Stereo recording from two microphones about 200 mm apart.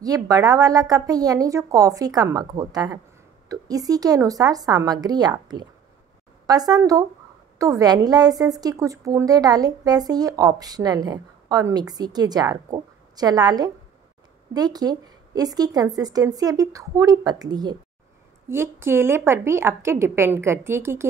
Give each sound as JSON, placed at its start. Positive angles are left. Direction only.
{"t": 0.0, "sound": "a woman's voice", "side_deg": -20}